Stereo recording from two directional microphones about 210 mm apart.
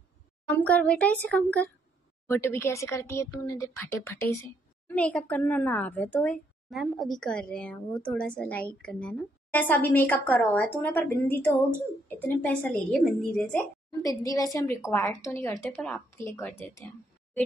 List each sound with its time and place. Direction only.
0.6 s a woman's voice: 5° left (ahead or behind)
14.0 s a woman's voice: 15° left (ahead or behind)